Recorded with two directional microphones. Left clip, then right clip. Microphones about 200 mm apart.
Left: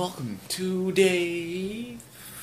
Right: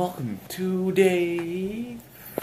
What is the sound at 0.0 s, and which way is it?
Speech, 5° left (ahead or behind).